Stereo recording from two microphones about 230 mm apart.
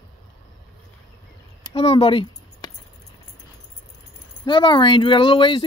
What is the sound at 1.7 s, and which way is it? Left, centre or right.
Speech, left.